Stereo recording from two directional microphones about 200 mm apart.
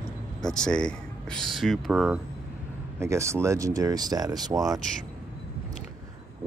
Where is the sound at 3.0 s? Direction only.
15° right (ahead or behind).